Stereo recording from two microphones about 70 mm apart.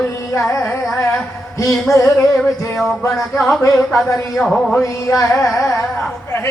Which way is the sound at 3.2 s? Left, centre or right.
Centre.